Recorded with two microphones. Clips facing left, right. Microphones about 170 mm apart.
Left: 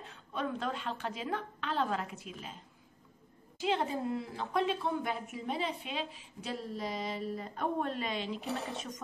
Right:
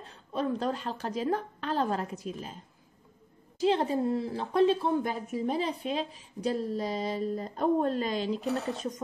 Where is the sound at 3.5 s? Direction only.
35° right (ahead or behind).